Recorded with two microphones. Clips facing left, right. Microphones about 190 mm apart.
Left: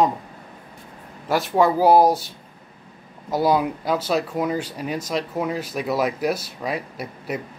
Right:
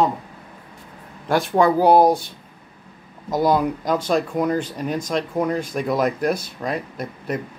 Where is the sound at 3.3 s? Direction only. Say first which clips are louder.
Right 1 dB; 5° left (ahead or behind).